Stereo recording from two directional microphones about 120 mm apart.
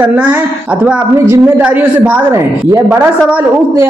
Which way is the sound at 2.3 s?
25° right (ahead or behind).